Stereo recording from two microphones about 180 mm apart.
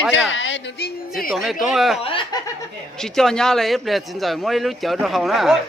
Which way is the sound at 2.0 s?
30° left (ahead or behind).